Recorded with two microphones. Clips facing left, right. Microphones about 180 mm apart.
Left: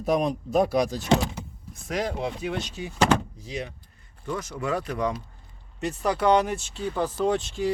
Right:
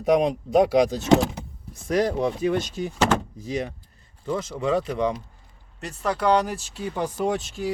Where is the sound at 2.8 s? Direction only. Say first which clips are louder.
Even; 45° right (ahead or behind).